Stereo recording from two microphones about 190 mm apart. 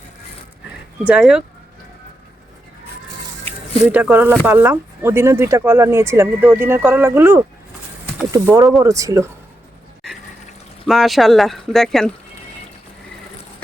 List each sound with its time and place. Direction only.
1.0 s speech: 5° right (ahead or behind)
3.8 s speech: 10° right (ahead or behind)
10.8 s speech: centre (ahead or behind)